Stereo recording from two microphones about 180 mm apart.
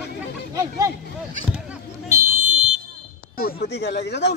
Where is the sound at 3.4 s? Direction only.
60° left (ahead or behind).